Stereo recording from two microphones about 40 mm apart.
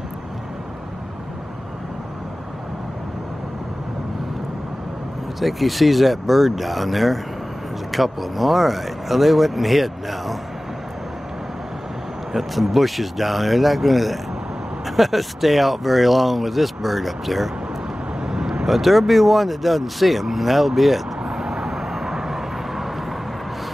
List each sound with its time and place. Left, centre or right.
5.4 s speech: centre
12.3 s speech: centre
18.2 s vehicle: centre
18.7 s speech: centre
21.2 s vehicle: centre